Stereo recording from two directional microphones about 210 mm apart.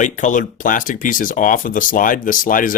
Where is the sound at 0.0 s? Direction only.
35° left (ahead or behind).